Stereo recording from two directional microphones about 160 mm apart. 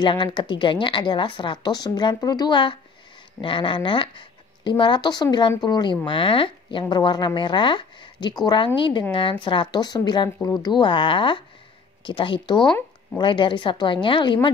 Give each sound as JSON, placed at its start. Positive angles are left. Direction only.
{"t": 0.0, "sound": "speech", "side_deg": 30}
{"t": 12.6, "sound": "speech", "side_deg": 5}
{"t": 13.2, "sound": "speech", "side_deg": 30}